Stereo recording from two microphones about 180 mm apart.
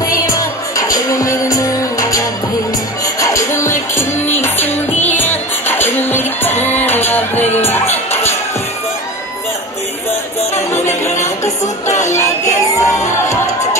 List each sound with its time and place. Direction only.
0.0 s music: 20° left (ahead or behind)
10.7 s music: 40° left (ahead or behind)
12.4 s music: 20° left (ahead or behind)